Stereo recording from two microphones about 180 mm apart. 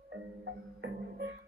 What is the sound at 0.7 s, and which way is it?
Music, 80° right.